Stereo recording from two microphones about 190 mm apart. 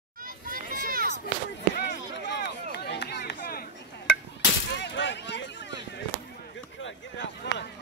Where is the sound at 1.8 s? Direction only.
65° left (ahead or behind).